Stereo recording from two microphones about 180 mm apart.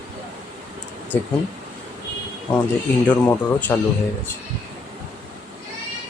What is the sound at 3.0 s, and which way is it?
Speech, 10° left (ahead or behind).